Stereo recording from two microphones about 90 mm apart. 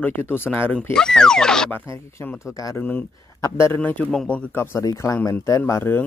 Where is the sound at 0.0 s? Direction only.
25° left (ahead or behind).